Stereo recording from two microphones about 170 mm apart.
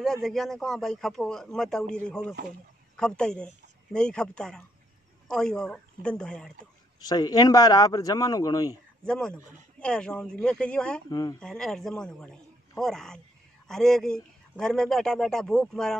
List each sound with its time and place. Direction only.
0.0 s a man's voice: centre (ahead or behind)
7.0 s speech: 20° left (ahead or behind)
9.0 s a man's voice: 5° left (ahead or behind)
11.1 s speech: 25° left (ahead or behind)
11.3 s a man's voice: 5° left (ahead or behind)